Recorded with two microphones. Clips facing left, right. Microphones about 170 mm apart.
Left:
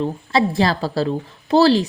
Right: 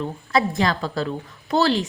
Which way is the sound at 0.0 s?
30° left (ahead or behind).